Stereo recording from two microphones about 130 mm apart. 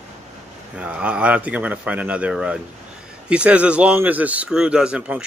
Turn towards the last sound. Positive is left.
turn(degrees=-10)  # may be behind; listen again after turning